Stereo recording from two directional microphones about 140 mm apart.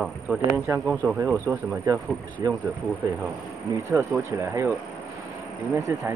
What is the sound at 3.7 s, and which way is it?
Speech, 20° right (ahead or behind).